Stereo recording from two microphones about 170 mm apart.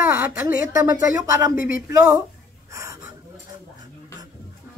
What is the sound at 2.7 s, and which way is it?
Gasp, 20° right (ahead or behind).